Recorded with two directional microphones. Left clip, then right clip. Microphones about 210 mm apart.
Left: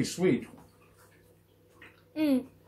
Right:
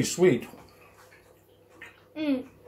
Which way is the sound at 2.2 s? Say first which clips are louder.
Left 2 dB; 45° left (ahead or behind).